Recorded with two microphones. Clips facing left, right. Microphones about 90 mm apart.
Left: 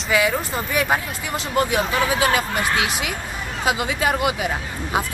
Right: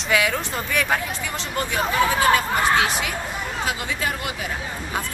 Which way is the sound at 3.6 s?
15° left (ahead or behind).